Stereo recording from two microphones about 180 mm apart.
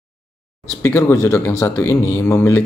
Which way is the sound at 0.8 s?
15° left (ahead or behind).